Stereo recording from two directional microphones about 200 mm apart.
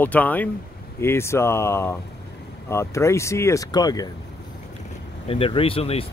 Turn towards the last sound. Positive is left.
turn(degrees=30)  # may be behind; listen again after turning